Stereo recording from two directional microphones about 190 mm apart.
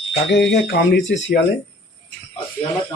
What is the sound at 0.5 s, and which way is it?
Speech, 60° left (ahead or behind).